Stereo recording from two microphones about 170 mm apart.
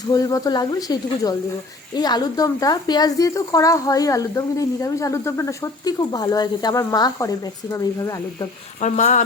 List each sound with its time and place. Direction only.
0.1 s speech: 20° left (ahead or behind)
8.8 s speech: 45° left (ahead or behind)